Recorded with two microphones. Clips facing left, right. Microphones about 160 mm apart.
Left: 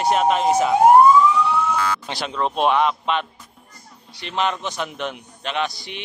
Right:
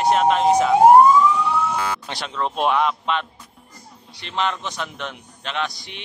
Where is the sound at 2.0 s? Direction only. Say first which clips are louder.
Left 2 dB; 5° left (ahead or behind).